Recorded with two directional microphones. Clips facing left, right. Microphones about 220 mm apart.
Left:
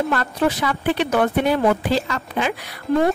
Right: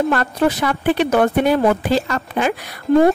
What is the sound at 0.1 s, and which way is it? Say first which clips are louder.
A woman's voice: right 3 dB; 45° right (ahead or behind).